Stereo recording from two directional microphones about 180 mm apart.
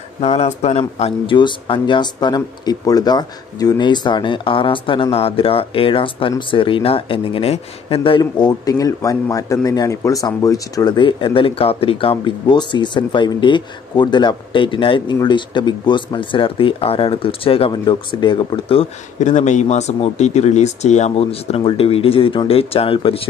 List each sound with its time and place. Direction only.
0.2 s speech: 35° left (ahead or behind)